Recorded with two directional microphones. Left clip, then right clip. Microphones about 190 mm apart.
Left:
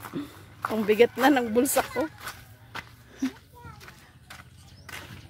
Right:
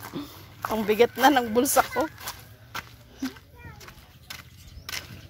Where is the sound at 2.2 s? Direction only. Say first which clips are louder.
Right 1 dB; 65° right (ahead or behind).